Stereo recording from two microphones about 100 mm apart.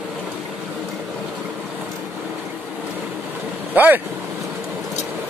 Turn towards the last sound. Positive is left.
turn(degrees=-20)  # may be behind; listen again after turning